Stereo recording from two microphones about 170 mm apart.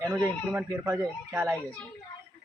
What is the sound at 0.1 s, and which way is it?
Speech, 15° right (ahead or behind).